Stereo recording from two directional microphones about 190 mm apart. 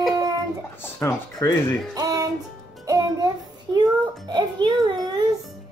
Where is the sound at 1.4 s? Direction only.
15° left (ahead or behind).